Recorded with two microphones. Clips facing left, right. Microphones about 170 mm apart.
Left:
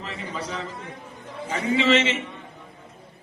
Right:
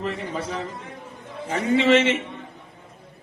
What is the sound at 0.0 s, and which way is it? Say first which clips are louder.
Speech: right 5 dB; 50° right (ahead or behind).